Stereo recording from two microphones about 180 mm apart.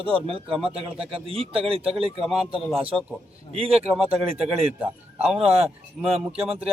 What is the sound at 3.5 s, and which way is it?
Speech, 35° right (ahead or behind).